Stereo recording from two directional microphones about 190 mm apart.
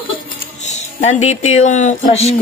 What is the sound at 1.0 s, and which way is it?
Speech, 35° left (ahead or behind).